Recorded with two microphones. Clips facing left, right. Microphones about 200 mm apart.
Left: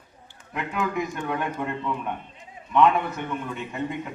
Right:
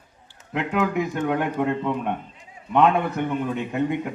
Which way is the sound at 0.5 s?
70° right (ahead or behind).